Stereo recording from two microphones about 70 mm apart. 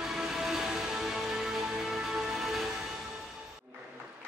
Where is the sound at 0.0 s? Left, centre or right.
Centre.